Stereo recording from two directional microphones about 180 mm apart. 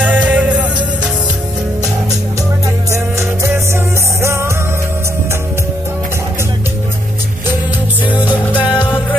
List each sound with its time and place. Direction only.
0.0 s music: 10° right (ahead or behind)
2.9 s music: 15° right (ahead or behind)
8.0 s music: 10° right (ahead or behind)